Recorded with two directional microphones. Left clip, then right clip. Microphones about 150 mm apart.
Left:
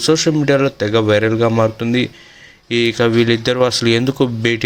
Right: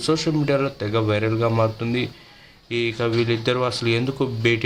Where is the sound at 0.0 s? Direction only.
25° left (ahead or behind).